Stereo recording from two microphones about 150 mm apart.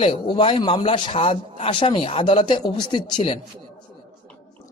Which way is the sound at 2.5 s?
30° left (ahead or behind).